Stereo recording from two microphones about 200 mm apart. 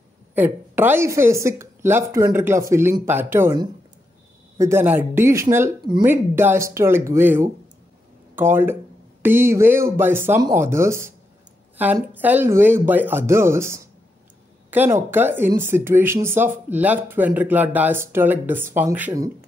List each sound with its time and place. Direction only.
0.3 s speech: 10° right (ahead or behind)